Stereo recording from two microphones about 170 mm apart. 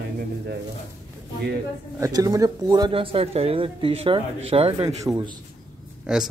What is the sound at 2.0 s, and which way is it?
Speech, 20° right (ahead or behind).